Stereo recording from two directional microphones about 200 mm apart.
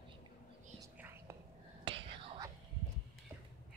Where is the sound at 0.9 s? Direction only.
10° right (ahead or behind).